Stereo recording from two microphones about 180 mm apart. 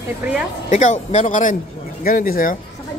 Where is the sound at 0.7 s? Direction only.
40° left (ahead or behind).